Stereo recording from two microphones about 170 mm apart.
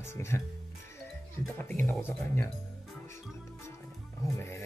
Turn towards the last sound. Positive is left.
turn(degrees=15)  # may be behind; listen again after turning